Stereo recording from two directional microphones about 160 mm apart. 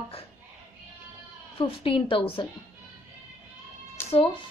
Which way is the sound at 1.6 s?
35° left (ahead or behind).